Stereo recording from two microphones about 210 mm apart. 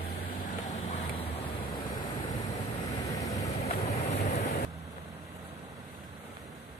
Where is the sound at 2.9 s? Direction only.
15° left (ahead or behind).